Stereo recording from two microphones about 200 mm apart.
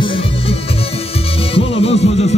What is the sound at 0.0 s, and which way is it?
Music, 25° left (ahead or behind).